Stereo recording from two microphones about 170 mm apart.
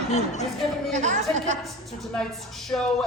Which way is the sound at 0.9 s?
45° right (ahead or behind).